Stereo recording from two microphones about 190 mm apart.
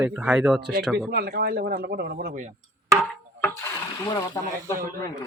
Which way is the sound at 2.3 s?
40° right (ahead or behind).